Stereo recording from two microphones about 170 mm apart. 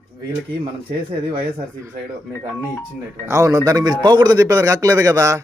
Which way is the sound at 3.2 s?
20° right (ahead or behind).